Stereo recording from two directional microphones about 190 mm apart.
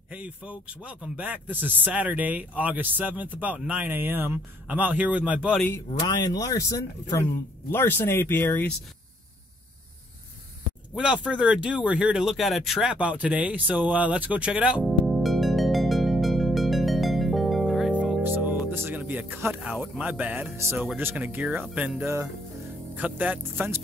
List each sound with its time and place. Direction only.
0.1 s speech: 5° right (ahead or behind)
5.9 s speech: 20° left (ahead or behind)
11.0 s speech: 5° right (ahead or behind)